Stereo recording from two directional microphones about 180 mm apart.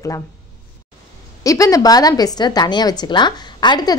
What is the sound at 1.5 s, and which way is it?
A woman's voice, 20° left (ahead or behind).